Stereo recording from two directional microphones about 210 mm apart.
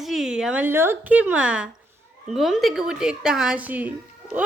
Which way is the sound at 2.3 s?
Centre (ahead or behind).